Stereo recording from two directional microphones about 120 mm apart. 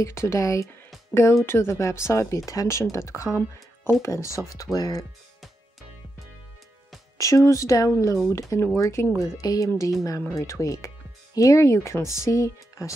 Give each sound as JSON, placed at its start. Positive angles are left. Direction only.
{"t": 0.0, "sound": "speech", "side_deg": 25}
{"t": 7.2, "sound": "speech", "side_deg": 25}